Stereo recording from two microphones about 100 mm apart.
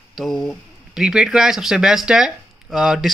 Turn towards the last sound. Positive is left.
turn(degrees=-5)  # may be behind; listen again after turning